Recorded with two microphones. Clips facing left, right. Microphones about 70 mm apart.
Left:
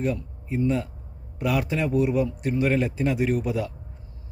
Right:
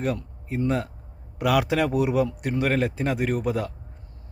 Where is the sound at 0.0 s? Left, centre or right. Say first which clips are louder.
Even; right.